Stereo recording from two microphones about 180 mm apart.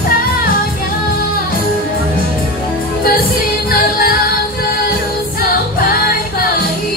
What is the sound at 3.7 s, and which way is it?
Music, 55° left (ahead or behind).